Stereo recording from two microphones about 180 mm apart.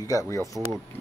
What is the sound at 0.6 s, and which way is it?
Speech, 20° right (ahead or behind).